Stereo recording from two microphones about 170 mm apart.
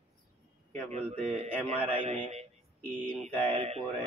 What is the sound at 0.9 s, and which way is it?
A man's voice, 35° right (ahead or behind).